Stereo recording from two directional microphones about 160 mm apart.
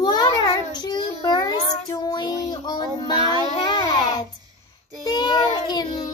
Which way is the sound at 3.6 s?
25° left (ahead or behind).